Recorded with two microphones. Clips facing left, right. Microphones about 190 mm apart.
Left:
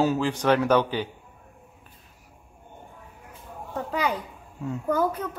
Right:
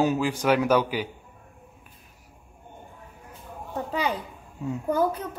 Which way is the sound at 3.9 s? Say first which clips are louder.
Left 1 dB; 30° right (ahead or behind).